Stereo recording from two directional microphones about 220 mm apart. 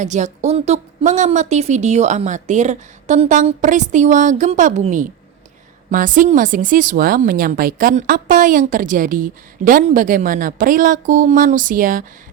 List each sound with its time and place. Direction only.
0.0 s a woman's voice: 35° right (ahead or behind)